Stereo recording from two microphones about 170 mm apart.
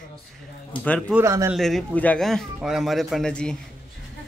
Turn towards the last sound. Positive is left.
turn(degrees=5)  # may be behind; listen again after turning